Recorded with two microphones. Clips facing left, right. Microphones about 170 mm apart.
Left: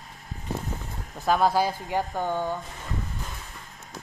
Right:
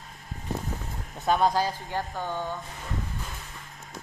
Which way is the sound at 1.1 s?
Centre (ahead or behind).